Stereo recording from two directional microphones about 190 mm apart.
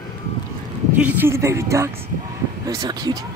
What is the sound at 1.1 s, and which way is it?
Speech, 10° right (ahead or behind).